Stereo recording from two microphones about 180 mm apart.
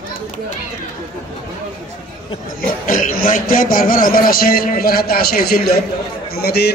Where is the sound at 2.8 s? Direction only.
50° left (ahead or behind).